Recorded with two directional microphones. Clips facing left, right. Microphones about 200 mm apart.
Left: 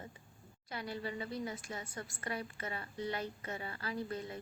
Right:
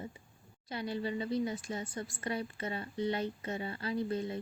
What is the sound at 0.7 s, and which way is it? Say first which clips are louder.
A woman's voice: right 5 dB; 25° right (ahead or behind).